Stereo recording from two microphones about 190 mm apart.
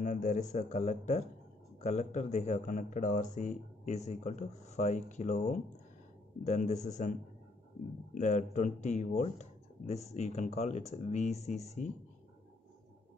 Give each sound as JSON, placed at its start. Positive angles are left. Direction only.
{"t": 0.0, "sound": "speech", "side_deg": 45}